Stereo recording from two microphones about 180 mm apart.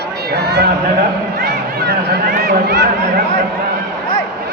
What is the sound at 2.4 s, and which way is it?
Speech, 65° right (ahead or behind).